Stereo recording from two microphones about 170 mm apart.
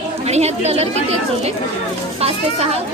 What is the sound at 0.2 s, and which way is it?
Speech, 40° right (ahead or behind).